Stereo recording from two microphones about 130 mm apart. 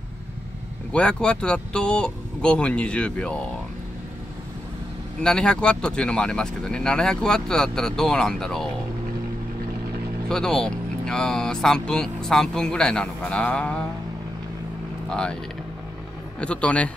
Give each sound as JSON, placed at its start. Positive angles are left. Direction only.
{"t": 0.9, "sound": "speech", "side_deg": 10}
{"t": 5.2, "sound": "speech", "side_deg": 5}
{"t": 10.2, "sound": "speech", "side_deg": 5}
{"t": 15.0, "sound": "speech", "side_deg": 5}
{"t": 16.3, "sound": "speech", "side_deg": 10}